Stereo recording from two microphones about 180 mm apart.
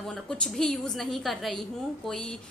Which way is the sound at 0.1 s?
5° left (ahead or behind).